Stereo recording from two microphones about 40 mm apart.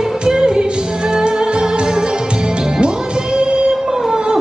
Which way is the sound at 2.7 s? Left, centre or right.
Right.